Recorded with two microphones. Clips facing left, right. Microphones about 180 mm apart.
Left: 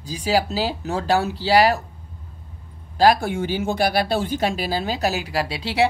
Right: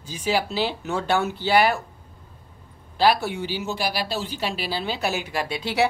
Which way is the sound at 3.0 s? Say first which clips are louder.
Left 3 dB; 45° left (ahead or behind).